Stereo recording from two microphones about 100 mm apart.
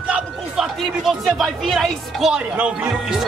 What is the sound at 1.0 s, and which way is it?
Speech, centre (ahead or behind).